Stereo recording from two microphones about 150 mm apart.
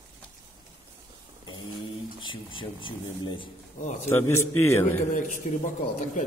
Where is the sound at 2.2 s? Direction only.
35° left (ahead or behind).